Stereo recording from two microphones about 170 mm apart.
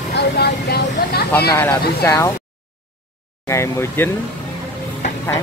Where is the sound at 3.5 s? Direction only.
15° left (ahead or behind).